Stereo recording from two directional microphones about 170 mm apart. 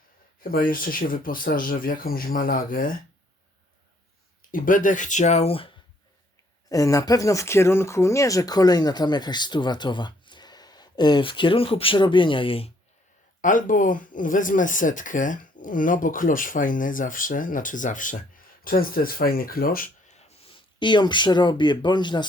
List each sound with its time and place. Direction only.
0.4 s speech: 55° left (ahead or behind)
4.5 s speech: 55° left (ahead or behind); by 5.7 s 35° left (ahead or behind)
6.7 s speech: 20° left (ahead or behind)
13.4 s speech: 50° left (ahead or behind); by 22.3 s 25° left (ahead or behind)